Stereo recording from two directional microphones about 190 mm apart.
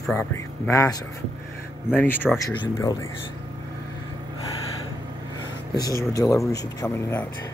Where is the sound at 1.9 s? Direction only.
10° left (ahead or behind).